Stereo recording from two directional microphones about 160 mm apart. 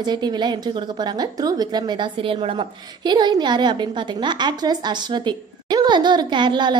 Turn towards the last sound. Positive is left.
turn(degrees=-30)  # may be behind; listen again after turning